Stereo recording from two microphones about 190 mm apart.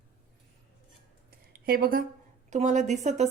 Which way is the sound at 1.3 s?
50° right (ahead or behind).